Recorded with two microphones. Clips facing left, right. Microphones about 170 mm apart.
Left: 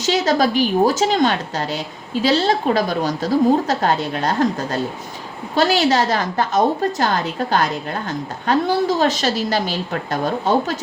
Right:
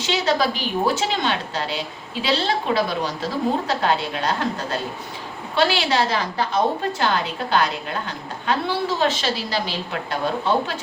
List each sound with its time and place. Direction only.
0.0 s a woman's voice: 40° left (ahead or behind)